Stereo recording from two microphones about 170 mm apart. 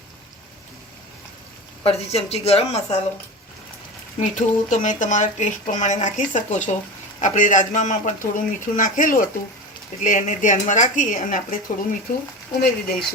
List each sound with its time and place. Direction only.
1.8 s speech: 35° left (ahead or behind)
4.2 s speech: 45° left (ahead or behind); by 13.1 s 65° left (ahead or behind)